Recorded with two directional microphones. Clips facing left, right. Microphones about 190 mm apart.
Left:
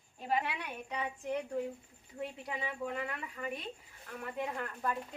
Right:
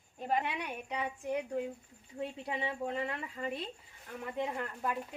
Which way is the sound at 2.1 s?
25° right (ahead or behind).